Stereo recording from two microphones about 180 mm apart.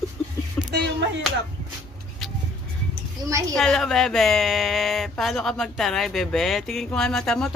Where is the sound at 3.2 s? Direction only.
20° right (ahead or behind).